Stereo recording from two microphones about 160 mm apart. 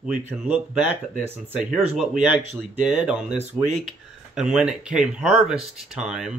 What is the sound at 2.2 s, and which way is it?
Speech, 10° right (ahead or behind).